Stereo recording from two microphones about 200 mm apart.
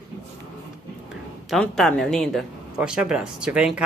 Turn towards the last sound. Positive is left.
turn(degrees=-5)  # may be behind; listen again after turning